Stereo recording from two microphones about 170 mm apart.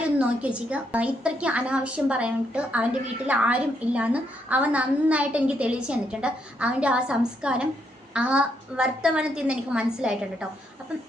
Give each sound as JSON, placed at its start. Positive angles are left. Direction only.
{"t": 0.2, "sound": "a woman's voice", "side_deg": -5}